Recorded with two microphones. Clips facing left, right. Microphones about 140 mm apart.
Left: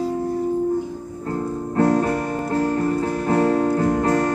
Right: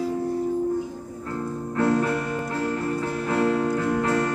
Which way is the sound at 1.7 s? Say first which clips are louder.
Left 4 dB; 40° left (ahead or behind).